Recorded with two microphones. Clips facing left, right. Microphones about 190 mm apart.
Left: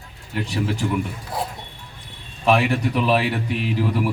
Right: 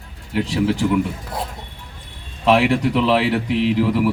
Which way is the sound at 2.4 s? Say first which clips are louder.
Right 3 dB; 90° right.